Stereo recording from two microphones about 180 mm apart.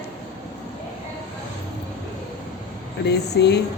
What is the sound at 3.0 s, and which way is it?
Speech, 65° left (ahead or behind).